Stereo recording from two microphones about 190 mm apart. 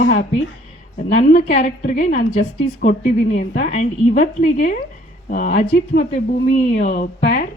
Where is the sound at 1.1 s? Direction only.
40° left (ahead or behind).